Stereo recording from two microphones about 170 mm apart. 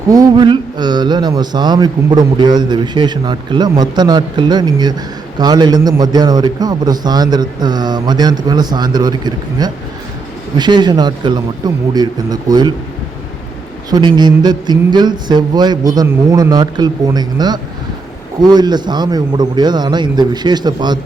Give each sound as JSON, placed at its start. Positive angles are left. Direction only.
{"t": 0.1, "sound": "speech", "side_deg": -20}
{"t": 13.9, "sound": "speech", "side_deg": -25}